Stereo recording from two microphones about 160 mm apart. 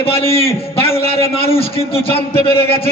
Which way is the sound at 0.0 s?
35° left (ahead or behind).